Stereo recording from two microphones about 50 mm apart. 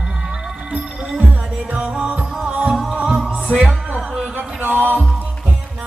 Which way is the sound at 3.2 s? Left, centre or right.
Centre.